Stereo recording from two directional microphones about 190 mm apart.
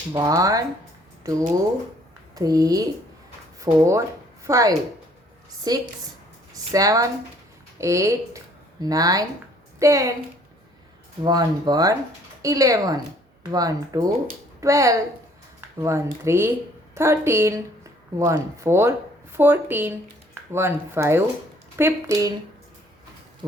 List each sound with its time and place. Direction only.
0.1 s speech: 20° right (ahead or behind)
11.2 s speech: 20° right (ahead or behind)
23.4 s speech: 20° right (ahead or behind)